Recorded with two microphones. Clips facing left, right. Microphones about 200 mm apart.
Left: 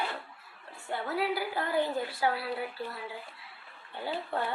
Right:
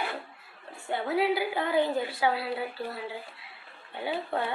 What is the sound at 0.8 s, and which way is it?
A woman's voice, 20° right (ahead or behind).